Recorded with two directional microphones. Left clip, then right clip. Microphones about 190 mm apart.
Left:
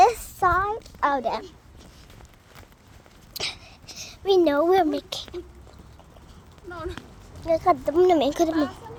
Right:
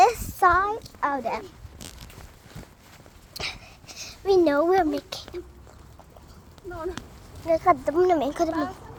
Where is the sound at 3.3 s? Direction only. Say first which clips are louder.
Left 2 dB; centre (ahead or behind).